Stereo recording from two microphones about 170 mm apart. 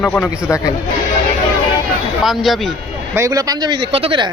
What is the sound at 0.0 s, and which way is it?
Speech, 10° left (ahead or behind).